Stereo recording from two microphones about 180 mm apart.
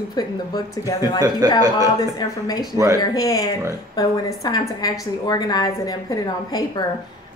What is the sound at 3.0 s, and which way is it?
A woman's voice, 20° left (ahead or behind).